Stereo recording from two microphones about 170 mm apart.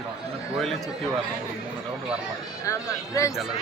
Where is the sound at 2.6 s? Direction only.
20° left (ahead or behind).